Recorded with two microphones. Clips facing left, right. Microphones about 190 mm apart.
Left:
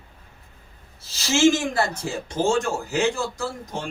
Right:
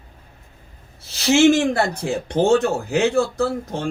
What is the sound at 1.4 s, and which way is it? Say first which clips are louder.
Speech: right 3 dB; 65° right (ahead or behind).